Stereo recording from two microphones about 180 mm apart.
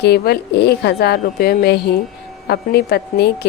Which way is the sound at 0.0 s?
65° left (ahead or behind).